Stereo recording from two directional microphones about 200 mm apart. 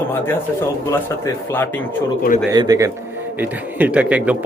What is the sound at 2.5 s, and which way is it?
Speech, 20° right (ahead or behind).